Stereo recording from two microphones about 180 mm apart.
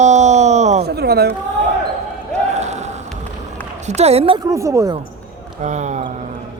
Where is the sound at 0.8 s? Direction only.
65° right (ahead or behind).